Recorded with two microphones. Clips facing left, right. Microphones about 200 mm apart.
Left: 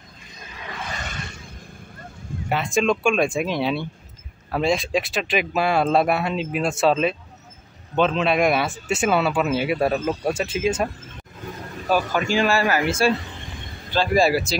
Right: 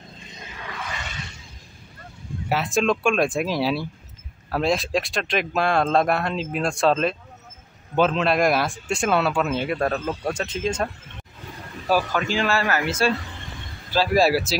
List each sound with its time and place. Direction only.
0.9 s a sound: 50° left (ahead or behind)
2.5 s speech: centre (ahead or behind)
12.1 s speech: 15° left (ahead or behind)
13.9 s speech: 5° right (ahead or behind)